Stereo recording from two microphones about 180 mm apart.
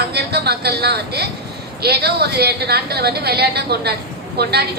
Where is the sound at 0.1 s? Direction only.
65° right (ahead or behind).